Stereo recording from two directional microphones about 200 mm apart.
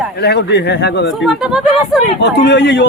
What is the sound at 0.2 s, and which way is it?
Speech, 55° left (ahead or behind).